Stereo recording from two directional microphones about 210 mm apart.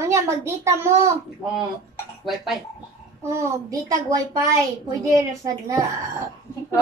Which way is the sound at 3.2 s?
15° right (ahead or behind).